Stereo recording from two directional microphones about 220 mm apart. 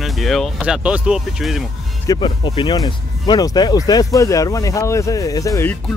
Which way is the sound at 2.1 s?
20° left (ahead or behind).